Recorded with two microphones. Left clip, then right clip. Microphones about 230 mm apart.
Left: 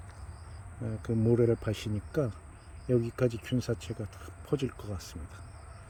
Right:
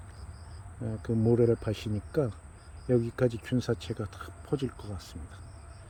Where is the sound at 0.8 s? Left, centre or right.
Centre.